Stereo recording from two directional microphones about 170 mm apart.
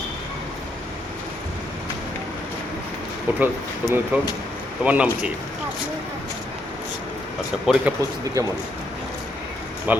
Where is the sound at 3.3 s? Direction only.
10° right (ahead or behind).